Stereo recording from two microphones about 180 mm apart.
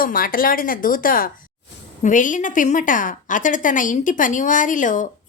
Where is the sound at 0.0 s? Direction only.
50° left (ahead or behind).